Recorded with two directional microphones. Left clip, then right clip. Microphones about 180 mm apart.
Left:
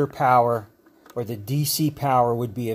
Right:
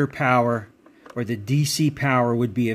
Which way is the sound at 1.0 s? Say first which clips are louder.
Right 1 dB; 15° right (ahead or behind).